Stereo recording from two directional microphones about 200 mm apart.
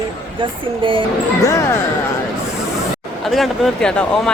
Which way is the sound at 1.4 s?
15° left (ahead or behind).